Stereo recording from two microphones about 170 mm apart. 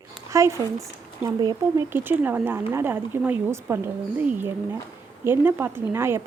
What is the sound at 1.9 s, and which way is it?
Speech, 10° right (ahead or behind).